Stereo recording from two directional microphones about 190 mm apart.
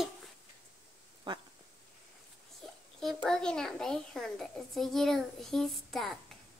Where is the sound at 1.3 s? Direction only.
25° right (ahead or behind).